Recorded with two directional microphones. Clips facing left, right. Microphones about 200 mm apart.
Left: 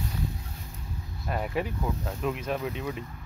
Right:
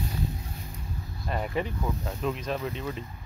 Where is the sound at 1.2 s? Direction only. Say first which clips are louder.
Even; 5° left (ahead or behind).